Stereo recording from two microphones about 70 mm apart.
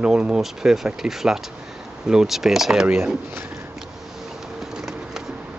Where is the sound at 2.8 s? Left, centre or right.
Right.